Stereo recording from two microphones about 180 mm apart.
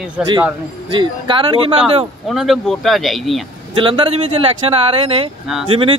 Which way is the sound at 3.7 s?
30° right (ahead or behind).